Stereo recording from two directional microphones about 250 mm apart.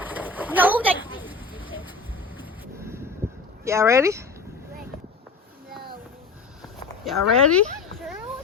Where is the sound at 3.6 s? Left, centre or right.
Centre.